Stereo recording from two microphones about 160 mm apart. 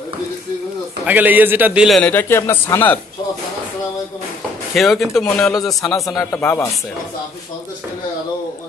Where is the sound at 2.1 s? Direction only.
15° left (ahead or behind).